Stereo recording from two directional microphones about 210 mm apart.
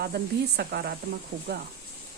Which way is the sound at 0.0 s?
50° right (ahead or behind).